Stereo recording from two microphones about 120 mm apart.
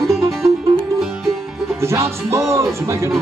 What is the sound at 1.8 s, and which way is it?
Music, 20° right (ahead or behind).